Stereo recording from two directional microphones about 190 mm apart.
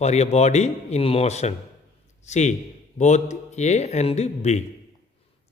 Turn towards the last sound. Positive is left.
turn(degrees=35)  # may be behind; listen again after turning